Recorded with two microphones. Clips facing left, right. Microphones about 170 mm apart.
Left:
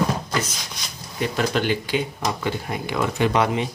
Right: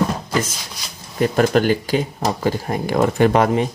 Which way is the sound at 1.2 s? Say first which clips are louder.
Right 7 dB; 45° right (ahead or behind).